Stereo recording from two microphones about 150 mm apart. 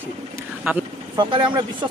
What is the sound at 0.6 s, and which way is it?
Speech, 10° right (ahead or behind).